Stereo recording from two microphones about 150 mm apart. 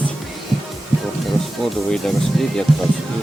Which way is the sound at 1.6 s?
Centre (ahead or behind).